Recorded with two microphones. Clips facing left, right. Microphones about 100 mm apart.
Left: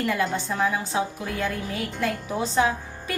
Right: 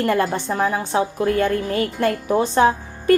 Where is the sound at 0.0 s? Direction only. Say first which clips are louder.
Right 6 dB; 55° right (ahead or behind).